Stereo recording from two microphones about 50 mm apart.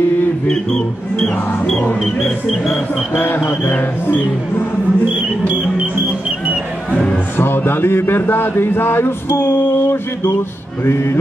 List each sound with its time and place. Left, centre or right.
0.5 s speech: centre
2.0 s music: centre
6.9 s music: centre
7.3 s speech: left
10.8 s speech: left